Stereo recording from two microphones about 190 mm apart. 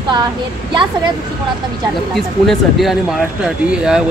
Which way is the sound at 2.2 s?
Centre (ahead or behind).